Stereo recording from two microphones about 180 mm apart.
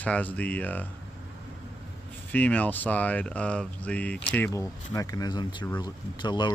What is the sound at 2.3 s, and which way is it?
Speech, 10° left (ahead or behind).